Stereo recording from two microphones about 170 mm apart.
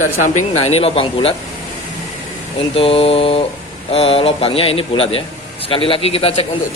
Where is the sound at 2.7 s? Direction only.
35° left (ahead or behind).